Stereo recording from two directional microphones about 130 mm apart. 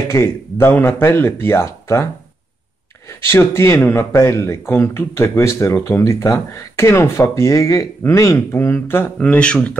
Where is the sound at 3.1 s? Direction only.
20° left (ahead or behind).